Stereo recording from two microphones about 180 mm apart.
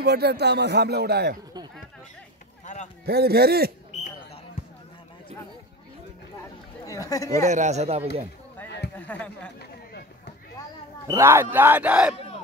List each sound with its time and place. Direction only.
0.0 s speech: 65° right (ahead or behind)
2.6 s a sound: 40° left (ahead or behind)
3.1 s speech: 60° right (ahead or behind)
6.9 s speech: 20° left (ahead or behind)
7.4 s speech: 40° right (ahead or behind)
8.9 s speech: 10° left (ahead or behind)
9.6 s a sound: 65° left (ahead or behind)
11.1 s speech: 15° right (ahead or behind)